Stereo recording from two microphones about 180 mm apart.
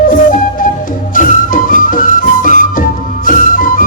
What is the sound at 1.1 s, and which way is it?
Music, 45° left (ahead or behind).